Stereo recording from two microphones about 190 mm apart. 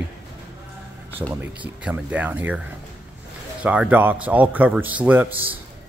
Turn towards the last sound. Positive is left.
turn(degrees=-10)  # may be behind; listen again after turning